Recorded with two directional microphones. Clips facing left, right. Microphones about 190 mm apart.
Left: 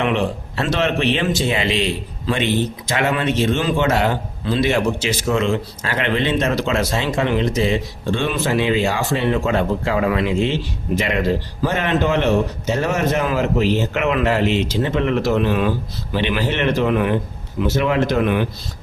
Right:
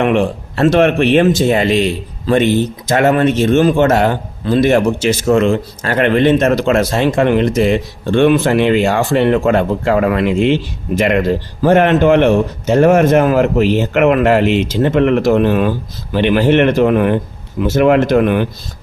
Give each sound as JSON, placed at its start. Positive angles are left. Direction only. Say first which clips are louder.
{"t": 0.0, "sound": "a man's voice", "louder": "right 6 dB", "side_deg": -50}